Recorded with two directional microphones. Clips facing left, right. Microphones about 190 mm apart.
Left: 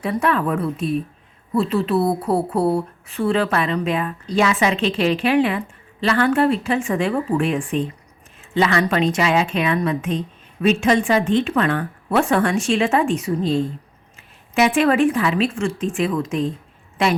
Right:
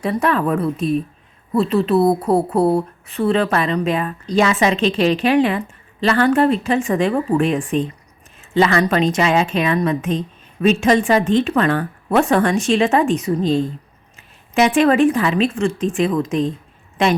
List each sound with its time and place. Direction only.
0.0 s a woman's voice: 40° right (ahead or behind)
14.8 s a woman's voice: 35° right (ahead or behind)